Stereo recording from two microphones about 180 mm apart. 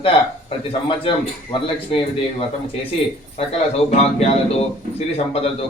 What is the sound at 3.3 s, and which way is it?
A man's voice, 35° left (ahead or behind).